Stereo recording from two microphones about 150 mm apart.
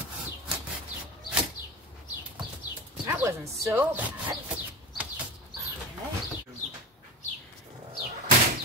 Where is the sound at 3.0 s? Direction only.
20° right (ahead or behind).